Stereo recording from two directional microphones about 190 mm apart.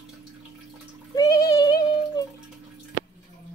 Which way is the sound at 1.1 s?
20° left (ahead or behind).